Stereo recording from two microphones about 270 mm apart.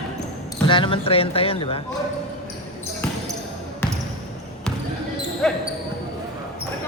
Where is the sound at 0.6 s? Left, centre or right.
Centre.